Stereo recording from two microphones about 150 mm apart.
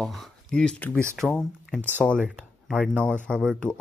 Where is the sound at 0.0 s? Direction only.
Centre (ahead or behind).